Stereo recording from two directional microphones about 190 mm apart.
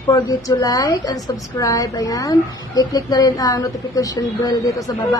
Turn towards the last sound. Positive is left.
turn(degrees=15)  # may be behind; listen again after turning